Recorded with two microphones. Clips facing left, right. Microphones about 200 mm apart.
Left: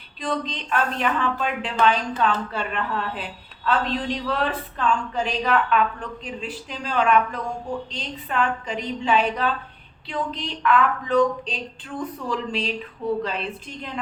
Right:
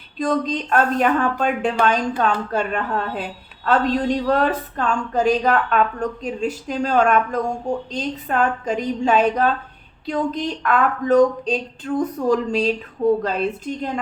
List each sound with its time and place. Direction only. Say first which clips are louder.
0.2 s a woman's voice: right 7 dB; 45° right (ahead or behind)